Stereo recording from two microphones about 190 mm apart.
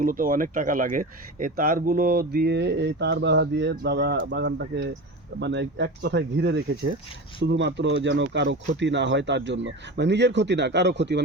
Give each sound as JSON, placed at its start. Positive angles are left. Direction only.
{"t": 0.0, "sound": "speech", "side_deg": -45}